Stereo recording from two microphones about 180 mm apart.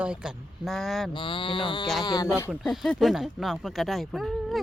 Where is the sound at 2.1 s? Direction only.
20° left (ahead or behind).